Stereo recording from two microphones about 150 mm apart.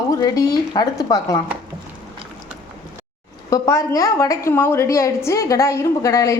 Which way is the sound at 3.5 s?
20° left (ahead or behind).